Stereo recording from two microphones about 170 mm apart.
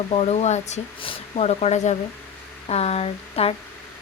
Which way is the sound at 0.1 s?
40° left (ahead or behind).